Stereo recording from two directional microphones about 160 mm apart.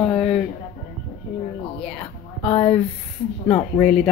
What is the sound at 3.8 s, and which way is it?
Speech, 5° left (ahead or behind).